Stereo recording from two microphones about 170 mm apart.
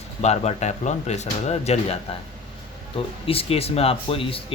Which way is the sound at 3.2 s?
35° left (ahead or behind).